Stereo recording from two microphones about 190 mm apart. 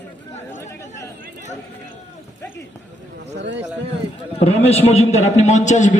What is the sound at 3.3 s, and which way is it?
Speech, 70° right (ahead or behind).